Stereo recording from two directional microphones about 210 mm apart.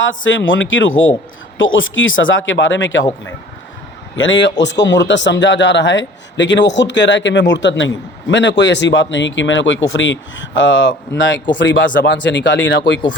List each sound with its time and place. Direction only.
0.0 s a man's voice: 65° left (ahead or behind)
4.1 s a man's voice: 65° left (ahead or behind)